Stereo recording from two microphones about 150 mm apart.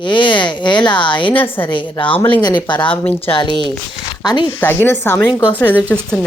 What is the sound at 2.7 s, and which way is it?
Speech, 10° left (ahead or behind).